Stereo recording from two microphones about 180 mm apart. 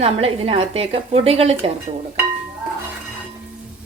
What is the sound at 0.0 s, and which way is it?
A woman's voice, 35° right (ahead or behind).